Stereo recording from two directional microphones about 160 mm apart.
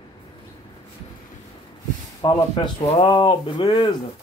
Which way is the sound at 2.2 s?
30° left (ahead or behind).